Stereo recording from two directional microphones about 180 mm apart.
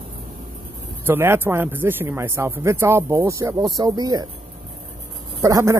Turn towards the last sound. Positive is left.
turn(degrees=-15)  # may be behind; listen again after turning